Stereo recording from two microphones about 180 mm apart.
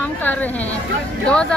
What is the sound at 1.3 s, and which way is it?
Speech, 5° left (ahead or behind).